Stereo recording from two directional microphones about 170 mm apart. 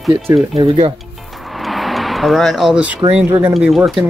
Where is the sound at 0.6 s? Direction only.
30° right (ahead or behind).